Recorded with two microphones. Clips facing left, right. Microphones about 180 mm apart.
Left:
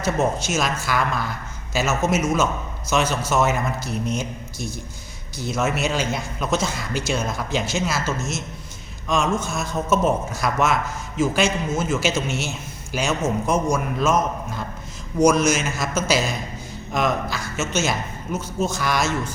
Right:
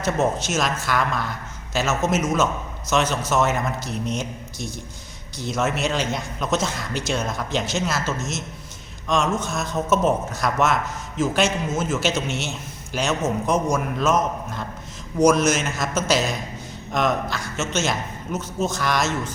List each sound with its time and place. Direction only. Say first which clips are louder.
0.0 s a man's voice: even; centre (ahead or behind)